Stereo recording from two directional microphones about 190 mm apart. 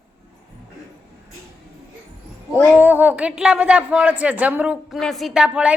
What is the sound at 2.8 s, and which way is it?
Speech, 10° right (ahead or behind).